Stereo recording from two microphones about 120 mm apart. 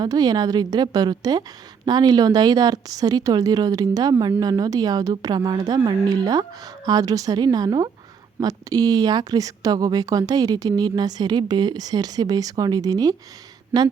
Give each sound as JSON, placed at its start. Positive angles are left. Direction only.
{"t": 0.0, "sound": "speech", "side_deg": -35}
{"t": 13.7, "sound": "speech", "side_deg": -15}